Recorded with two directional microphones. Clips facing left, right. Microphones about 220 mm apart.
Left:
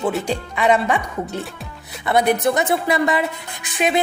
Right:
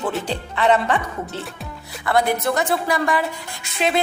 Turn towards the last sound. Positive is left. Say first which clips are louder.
# left 2 dB
turn(degrees=15)  # may be behind; listen again after turning